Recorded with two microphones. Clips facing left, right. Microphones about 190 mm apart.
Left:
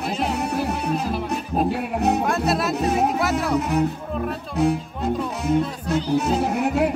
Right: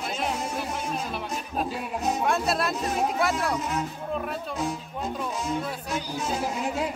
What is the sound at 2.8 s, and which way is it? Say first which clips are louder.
Speech: left 5 dB; 65° left (ahead or behind).